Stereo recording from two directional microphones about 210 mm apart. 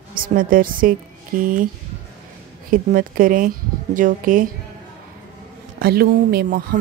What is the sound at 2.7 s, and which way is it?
Speech, 40° right (ahead or behind).